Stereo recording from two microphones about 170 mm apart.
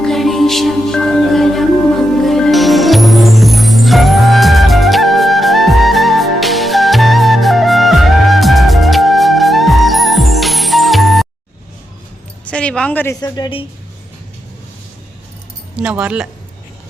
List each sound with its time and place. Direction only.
0.0 s music: centre (ahead or behind)
12.5 s a sound: 5° left (ahead or behind)
13.2 s a woman's voice: 25° left (ahead or behind)
15.7 s speech: 5° right (ahead or behind)